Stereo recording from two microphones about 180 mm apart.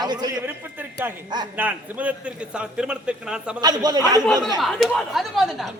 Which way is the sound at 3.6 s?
20° right (ahead or behind).